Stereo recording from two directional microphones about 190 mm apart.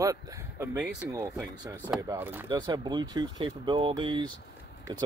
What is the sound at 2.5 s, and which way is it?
Speech, 20° right (ahead or behind).